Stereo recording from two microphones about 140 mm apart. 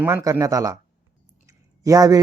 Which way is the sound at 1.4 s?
25° right (ahead or behind).